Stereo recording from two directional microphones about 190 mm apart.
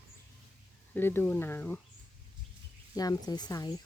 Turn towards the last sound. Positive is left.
turn(degrees=20)  # may be behind; listen again after turning